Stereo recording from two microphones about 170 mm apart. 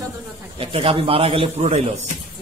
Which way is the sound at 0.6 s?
30° right (ahead or behind).